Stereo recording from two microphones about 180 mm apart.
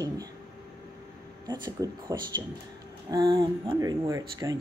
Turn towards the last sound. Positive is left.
turn(degrees=-15)  # may be behind; listen again after turning